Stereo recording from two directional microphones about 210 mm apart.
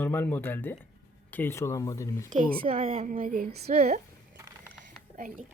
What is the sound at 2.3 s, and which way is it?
Speech, 30° right (ahead or behind).